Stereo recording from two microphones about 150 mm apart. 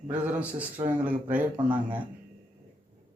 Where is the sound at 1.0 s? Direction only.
10° right (ahead or behind).